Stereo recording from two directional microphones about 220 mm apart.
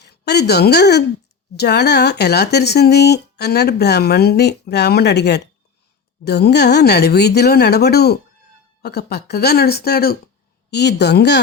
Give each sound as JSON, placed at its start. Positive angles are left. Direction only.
{"t": 0.0, "sound": "a woman's voice", "side_deg": 50}